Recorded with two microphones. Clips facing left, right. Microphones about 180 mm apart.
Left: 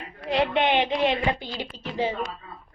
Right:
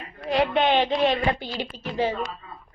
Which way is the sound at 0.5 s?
20° left (ahead or behind).